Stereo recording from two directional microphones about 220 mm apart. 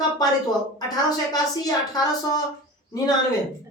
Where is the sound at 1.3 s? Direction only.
15° left (ahead or behind).